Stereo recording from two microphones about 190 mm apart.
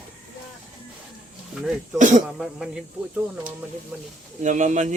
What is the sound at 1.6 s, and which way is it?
Speech, centre (ahead or behind).